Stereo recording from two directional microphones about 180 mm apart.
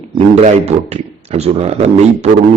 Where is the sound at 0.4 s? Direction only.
40° right (ahead or behind).